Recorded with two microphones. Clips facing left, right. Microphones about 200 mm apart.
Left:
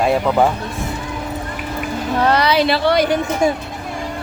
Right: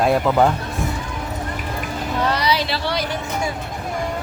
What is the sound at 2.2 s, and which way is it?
Speech, 60° left (ahead or behind).